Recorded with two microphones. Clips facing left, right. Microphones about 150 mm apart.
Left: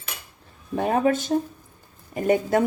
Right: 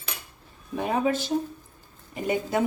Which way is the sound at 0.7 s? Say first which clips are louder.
Left 4 dB; 50° left (ahead or behind).